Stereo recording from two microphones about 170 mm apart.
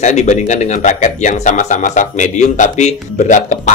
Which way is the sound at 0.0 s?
40° left (ahead or behind).